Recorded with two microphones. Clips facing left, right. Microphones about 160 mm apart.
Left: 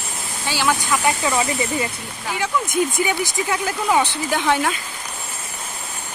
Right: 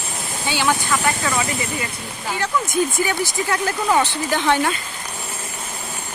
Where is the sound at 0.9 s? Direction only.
15° left (ahead or behind).